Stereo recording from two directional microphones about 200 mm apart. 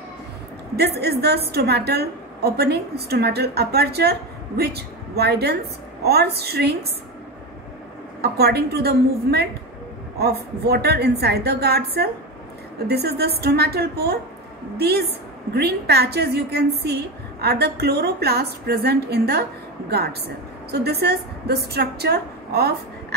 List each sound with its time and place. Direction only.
0.7 s a woman's voice: 55° right (ahead or behind)
8.2 s a woman's voice: 55° right (ahead or behind)